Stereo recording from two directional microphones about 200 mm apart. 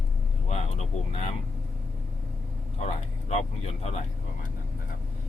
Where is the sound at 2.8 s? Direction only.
35° left (ahead or behind).